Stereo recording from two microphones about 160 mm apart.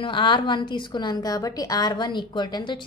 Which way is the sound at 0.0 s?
30° left (ahead or behind).